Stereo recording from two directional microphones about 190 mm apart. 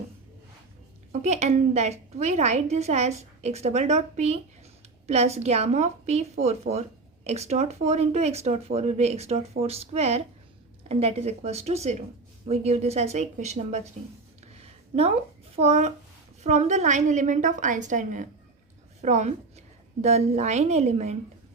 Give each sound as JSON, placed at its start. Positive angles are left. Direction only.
{"t": 1.2, "sound": "a woman's voice", "side_deg": -35}
{"t": 14.4, "sound": "a sound", "side_deg": -35}
{"t": 15.5, "sound": "a woman's voice", "side_deg": -35}